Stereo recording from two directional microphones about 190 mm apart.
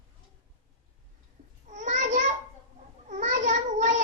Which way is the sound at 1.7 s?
40° right (ahead or behind).